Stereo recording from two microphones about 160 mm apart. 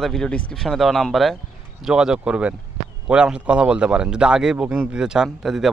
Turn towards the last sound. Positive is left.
turn(degrees=0)  # may be behind; listen again after turning